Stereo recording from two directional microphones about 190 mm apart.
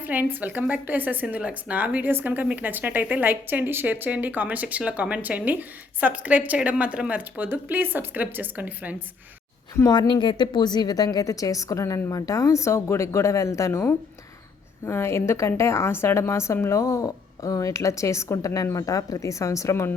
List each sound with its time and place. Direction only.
0.1 s speech: 10° right (ahead or behind)
9.7 s a woman's voice: 15° left (ahead or behind)